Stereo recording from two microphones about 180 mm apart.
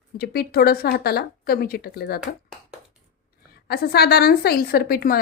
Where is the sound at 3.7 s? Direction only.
60° left (ahead or behind).